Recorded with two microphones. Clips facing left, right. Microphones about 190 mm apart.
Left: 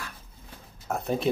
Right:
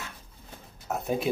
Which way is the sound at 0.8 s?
5° right (ahead or behind).